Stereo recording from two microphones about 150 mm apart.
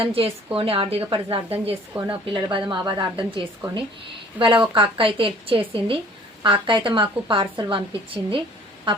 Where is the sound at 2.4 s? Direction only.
35° right (ahead or behind).